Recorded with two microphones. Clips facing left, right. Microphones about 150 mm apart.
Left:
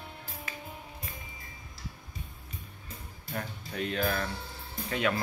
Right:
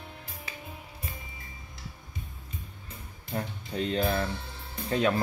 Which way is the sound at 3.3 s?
30° right (ahead or behind).